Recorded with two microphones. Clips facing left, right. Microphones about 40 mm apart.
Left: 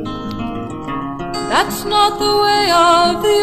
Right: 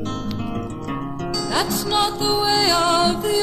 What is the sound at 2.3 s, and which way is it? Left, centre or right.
Music, left.